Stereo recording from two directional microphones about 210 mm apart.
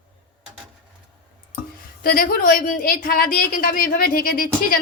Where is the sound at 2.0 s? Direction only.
40° left (ahead or behind).